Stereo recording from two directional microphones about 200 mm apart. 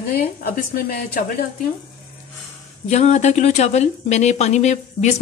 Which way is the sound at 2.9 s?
35° left (ahead or behind).